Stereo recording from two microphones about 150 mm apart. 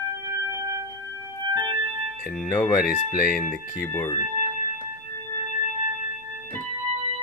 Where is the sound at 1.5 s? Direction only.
30° right (ahead or behind).